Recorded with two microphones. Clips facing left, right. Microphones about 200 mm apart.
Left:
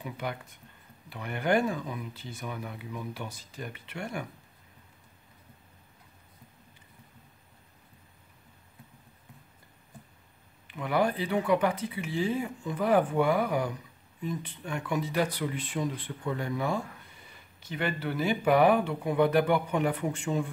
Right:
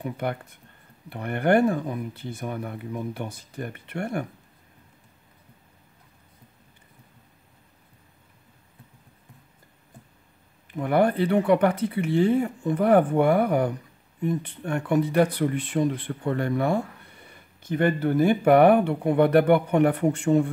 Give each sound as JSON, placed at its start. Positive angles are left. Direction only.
{"t": 0.0, "sound": "speech", "side_deg": -55}
{"t": 10.7, "sound": "speech", "side_deg": -50}